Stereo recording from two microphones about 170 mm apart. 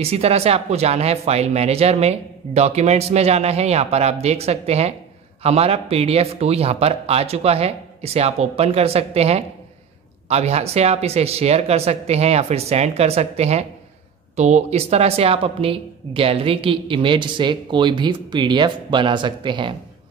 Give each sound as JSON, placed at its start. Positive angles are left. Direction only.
{"t": 0.0, "sound": "a woman's voice", "side_deg": -35}